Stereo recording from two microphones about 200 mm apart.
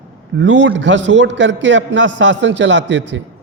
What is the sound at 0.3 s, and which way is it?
A man's voice, 65° right (ahead or behind).